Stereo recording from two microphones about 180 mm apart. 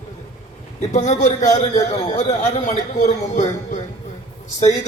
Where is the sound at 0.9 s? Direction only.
40° left (ahead or behind).